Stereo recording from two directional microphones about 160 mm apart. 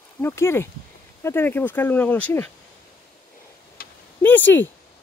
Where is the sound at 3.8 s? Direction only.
70° left (ahead or behind).